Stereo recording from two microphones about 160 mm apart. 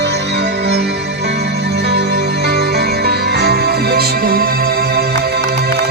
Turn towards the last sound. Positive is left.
turn(degrees=-75)  # may be behind; listen again after turning